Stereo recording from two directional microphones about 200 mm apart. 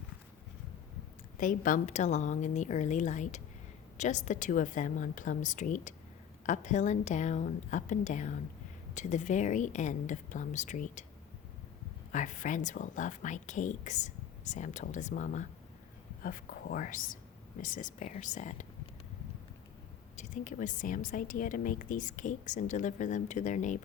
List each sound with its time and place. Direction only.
1.4 s a woman's voice: 40° left (ahead or behind)
12.1 s a woman's voice: 40° left (ahead or behind)
20.1 s a woman's voice: 35° left (ahead or behind)